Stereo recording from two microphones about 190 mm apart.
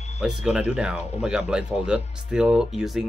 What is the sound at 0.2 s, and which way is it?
Speech, 5° right (ahead or behind).